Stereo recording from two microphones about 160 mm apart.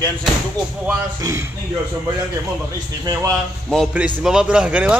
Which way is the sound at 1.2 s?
20° right (ahead or behind).